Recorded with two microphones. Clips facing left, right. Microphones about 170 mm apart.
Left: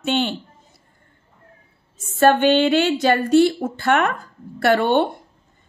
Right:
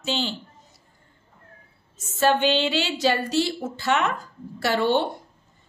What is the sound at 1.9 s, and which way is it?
A woman's voice, 50° left (ahead or behind).